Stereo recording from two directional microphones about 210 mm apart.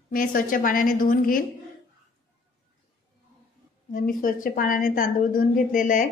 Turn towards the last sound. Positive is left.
turn(degrees=40)  # may be behind; listen again after turning